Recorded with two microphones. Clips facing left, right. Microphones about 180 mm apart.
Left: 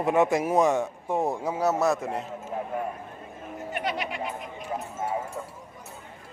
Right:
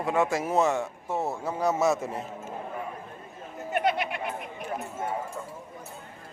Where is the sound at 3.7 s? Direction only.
55° right (ahead or behind).